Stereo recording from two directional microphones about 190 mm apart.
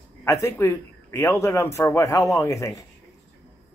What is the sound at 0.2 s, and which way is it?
A man's voice, 15° left (ahead or behind).